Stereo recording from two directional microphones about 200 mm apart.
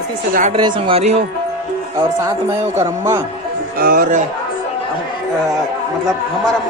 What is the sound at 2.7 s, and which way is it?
Speech, 15° right (ahead or behind).